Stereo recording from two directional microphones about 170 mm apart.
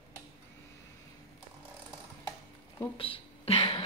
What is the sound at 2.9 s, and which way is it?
Speech, 30° left (ahead or behind).